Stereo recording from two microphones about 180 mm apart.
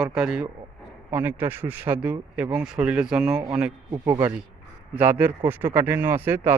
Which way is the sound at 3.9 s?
15° right (ahead or behind).